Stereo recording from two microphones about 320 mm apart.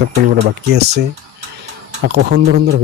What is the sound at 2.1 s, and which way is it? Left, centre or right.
Speech, right.